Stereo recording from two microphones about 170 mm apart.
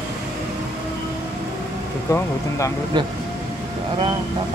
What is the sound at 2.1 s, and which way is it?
Speech, 20° left (ahead or behind).